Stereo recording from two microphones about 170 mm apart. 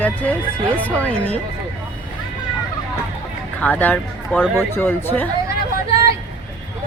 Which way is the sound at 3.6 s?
10° left (ahead or behind).